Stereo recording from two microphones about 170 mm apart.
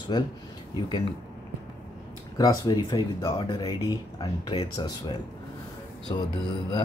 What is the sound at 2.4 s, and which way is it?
Speech, 25° left (ahead or behind).